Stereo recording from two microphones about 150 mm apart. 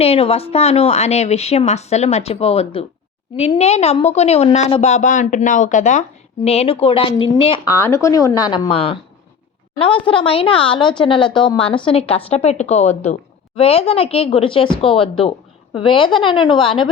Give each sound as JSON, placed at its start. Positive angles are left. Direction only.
{"t": 0.0, "sound": "a woman's voice", "side_deg": 40}